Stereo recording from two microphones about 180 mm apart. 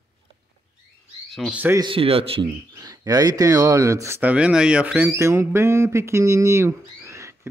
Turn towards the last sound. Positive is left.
turn(degrees=-15)  # may be behind; listen again after turning